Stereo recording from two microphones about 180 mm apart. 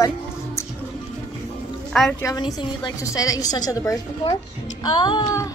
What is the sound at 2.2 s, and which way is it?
A woman's voice, 20° left (ahead or behind).